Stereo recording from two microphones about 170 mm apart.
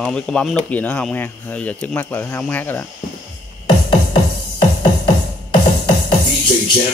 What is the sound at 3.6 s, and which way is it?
Music, 30° left (ahead or behind).